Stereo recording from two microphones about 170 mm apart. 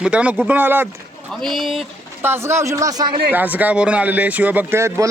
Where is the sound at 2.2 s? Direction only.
15° right (ahead or behind).